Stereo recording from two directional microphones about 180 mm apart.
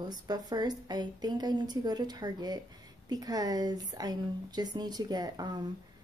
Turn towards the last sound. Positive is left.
turn(degrees=-20)  # may be behind; listen again after turning